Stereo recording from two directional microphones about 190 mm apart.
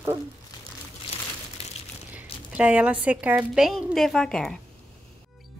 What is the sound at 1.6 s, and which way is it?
Crumpling, 30° left (ahead or behind).